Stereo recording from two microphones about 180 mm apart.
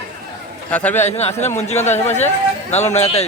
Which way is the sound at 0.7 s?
10° left (ahead or behind).